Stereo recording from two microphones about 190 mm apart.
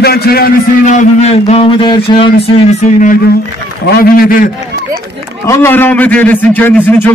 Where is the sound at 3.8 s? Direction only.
50° left (ahead or behind).